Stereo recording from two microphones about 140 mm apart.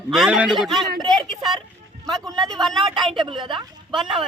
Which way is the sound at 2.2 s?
30° right (ahead or behind).